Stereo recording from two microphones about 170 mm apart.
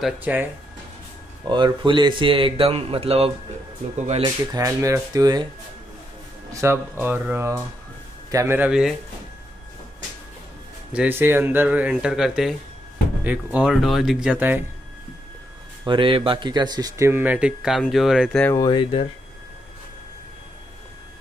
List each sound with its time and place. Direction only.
0.0 s speech: 10° right (ahead or behind)
1.5 s speech: 30° right (ahead or behind)
4.2 s speech: 20° right (ahead or behind)
6.5 s speech: 15° right (ahead or behind)
10.9 s speech: 10° right (ahead or behind)
15.8 s speech: 30° right (ahead or behind); by 18.4 s 5° right (ahead or behind)
18.4 s speech: 20° left (ahead or behind)